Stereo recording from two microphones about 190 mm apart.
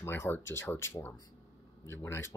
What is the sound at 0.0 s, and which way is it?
Speech, 10° left (ahead or behind).